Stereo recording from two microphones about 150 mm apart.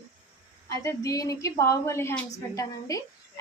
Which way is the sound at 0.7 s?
20° left (ahead or behind).